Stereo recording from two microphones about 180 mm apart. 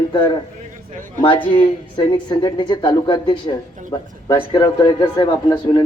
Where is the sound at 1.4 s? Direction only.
25° left (ahead or behind).